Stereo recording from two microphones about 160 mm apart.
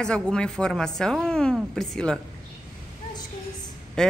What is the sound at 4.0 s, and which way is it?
Speech, 5° left (ahead or behind).